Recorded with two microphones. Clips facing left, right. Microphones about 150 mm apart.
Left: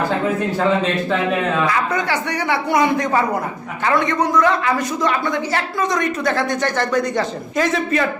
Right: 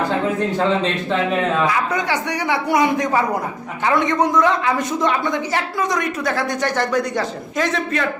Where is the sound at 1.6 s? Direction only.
10° right (ahead or behind).